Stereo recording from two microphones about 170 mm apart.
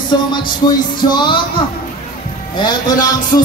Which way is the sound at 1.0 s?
25° left (ahead or behind).